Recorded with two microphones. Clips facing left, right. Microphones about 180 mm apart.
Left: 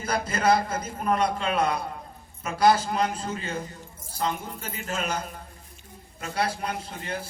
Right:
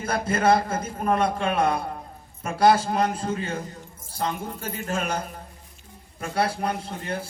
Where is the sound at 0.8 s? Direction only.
50° right (ahead or behind).